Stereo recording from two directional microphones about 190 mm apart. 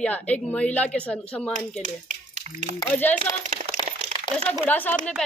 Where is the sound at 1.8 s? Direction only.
40° right (ahead or behind).